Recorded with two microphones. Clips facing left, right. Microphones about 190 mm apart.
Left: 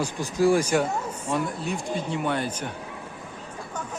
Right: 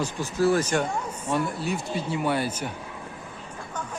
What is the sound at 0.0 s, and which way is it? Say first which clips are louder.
Speech: left 1 dB; 15° left (ahead or behind).